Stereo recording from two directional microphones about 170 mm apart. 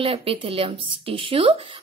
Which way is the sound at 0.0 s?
35° right (ahead or behind).